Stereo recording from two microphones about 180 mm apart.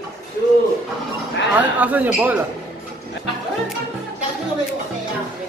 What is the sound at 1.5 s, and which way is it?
Speech, 10° right (ahead or behind).